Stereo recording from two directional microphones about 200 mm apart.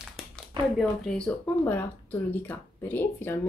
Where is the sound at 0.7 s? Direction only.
5° left (ahead or behind).